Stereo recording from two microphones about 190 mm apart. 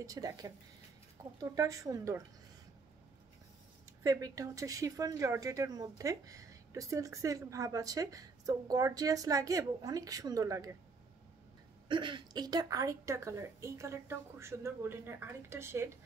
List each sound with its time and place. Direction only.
0.0 s speech: 20° right (ahead or behind)
4.0 s speech: 20° right (ahead or behind)
11.9 s speech: 25° right (ahead or behind)